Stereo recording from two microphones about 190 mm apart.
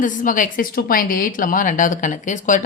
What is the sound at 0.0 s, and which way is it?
A woman's voice, 45° left (ahead or behind).